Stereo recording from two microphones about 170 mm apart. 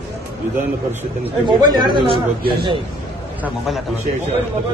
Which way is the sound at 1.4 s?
25° right (ahead or behind).